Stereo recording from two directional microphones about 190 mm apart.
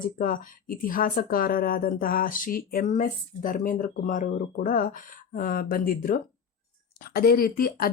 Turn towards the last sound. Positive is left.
turn(degrees=50)  # may be behind; listen again after turning